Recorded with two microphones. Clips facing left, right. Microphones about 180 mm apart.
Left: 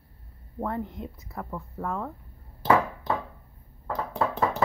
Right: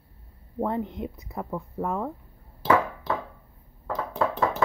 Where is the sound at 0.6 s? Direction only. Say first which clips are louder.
Right 4 dB; 20° right (ahead or behind).